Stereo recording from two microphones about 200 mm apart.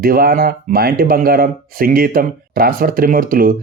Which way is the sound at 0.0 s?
50° right (ahead or behind).